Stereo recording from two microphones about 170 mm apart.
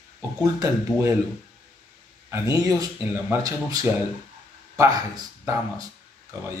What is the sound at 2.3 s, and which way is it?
Speech, 20° right (ahead or behind).